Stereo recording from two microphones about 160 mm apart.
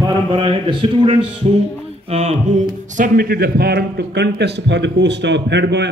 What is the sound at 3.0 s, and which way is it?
A man's voice, 70° right (ahead or behind).